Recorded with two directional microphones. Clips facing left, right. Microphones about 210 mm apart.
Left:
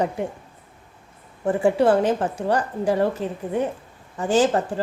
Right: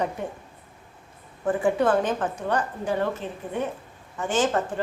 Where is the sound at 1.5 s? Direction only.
25° left (ahead or behind).